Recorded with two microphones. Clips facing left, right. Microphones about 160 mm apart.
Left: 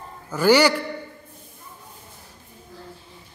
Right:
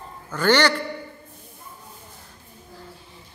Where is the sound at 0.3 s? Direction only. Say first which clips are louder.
Left 3 dB; 10° left (ahead or behind).